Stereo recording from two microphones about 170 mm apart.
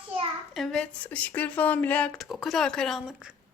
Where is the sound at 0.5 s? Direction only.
Centre (ahead or behind).